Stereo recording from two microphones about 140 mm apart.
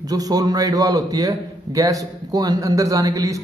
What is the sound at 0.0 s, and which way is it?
A man's voice, 25° right (ahead or behind).